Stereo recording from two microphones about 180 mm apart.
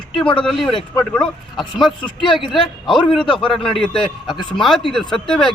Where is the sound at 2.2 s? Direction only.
25° left (ahead or behind).